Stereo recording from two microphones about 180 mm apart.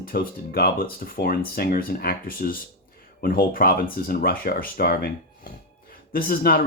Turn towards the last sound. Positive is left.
turn(degrees=55)  # may be behind; listen again after turning